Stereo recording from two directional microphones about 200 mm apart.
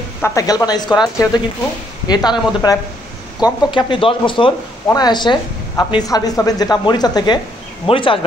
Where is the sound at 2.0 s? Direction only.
20° left (ahead or behind).